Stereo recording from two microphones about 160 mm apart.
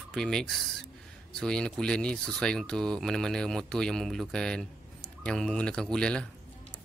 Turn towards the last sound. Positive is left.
turn(degrees=5)  # may be behind; listen again after turning